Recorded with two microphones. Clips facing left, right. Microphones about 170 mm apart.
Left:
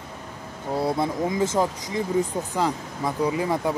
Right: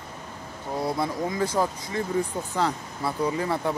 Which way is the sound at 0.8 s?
20° left (ahead or behind).